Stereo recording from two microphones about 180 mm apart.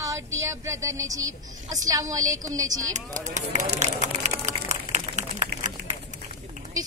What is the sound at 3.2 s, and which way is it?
Speech, 40° right (ahead or behind).